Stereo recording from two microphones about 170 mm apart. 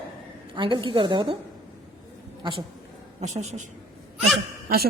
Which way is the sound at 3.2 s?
40° right (ahead or behind).